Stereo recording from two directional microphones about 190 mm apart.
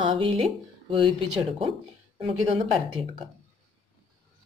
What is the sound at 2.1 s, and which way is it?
Speech, 30° right (ahead or behind).